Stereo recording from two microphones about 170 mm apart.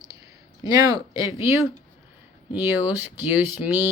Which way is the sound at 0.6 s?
20° right (ahead or behind).